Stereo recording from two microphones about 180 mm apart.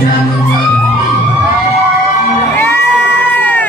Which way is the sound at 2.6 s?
10° left (ahead or behind).